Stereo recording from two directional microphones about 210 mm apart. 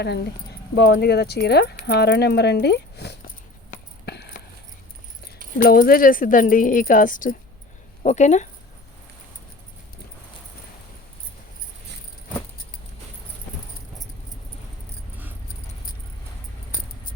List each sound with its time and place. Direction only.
0.8 s speech: 45° left (ahead or behind)
4.0 s a sound: 50° left (ahead or behind)
5.5 s speech: 45° left (ahead or behind)